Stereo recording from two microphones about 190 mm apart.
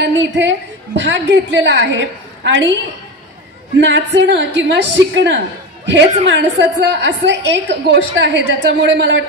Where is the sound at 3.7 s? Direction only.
70° right (ahead or behind).